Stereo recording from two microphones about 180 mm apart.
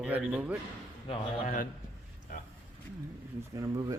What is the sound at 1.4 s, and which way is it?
Speech, 45° left (ahead or behind).